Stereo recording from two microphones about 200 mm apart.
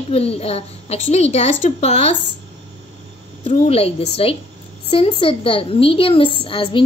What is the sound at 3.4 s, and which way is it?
A woman's voice, 30° left (ahead or behind).